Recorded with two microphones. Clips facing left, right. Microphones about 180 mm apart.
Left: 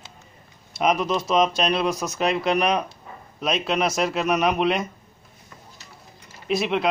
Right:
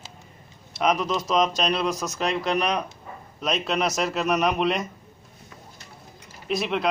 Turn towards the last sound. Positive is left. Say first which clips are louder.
# left 3 dB
turn(degrees=0)  # may be behind; listen again after turning